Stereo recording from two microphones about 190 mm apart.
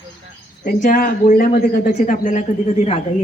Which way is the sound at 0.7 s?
45° left (ahead or behind).